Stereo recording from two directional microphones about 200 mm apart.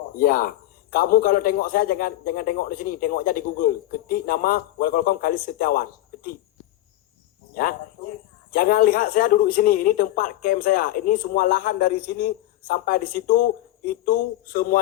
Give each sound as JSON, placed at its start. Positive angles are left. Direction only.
{"t": 0.2, "sound": "a man's voice", "side_deg": 45}
{"t": 7.5, "sound": "a man's voice", "side_deg": 45}